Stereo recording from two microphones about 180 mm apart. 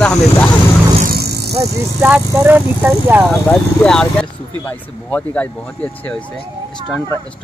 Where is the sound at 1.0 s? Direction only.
65° right (ahead or behind).